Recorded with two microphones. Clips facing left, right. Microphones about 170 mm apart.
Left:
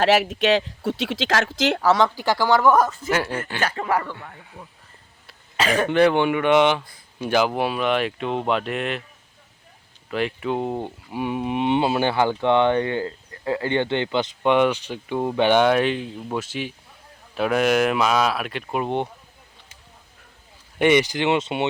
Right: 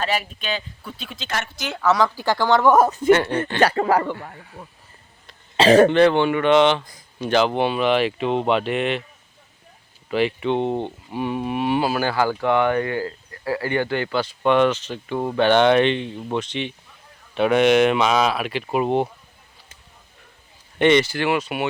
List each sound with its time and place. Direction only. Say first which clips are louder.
0.0 s speech: left 7 dB; 80° left
1.8 s speech: right 1 dB; 30° left (ahead or behind)
2.0 s speech: even; 15° left (ahead or behind)
3.6 s a man's voice: right 6 dB; 35° right (ahead or behind)
5.5 s speech: right 9 dB; 35° right (ahead or behind)
5.9 s speech: right 1 dB; 10° left (ahead or behind)
10.1 s speech: right 4 dB; centre (ahead or behind)
20.7 s speech: right 1 dB; 10° left (ahead or behind)